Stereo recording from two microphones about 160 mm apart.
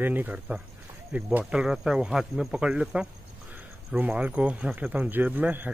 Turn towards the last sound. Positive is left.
turn(degrees=-10)  # may be behind; listen again after turning